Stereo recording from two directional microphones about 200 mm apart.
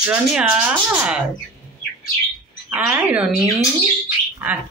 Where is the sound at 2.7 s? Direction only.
5° right (ahead or behind).